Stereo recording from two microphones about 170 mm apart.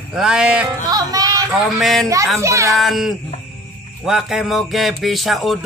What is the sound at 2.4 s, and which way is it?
Speech, 15° right (ahead or behind).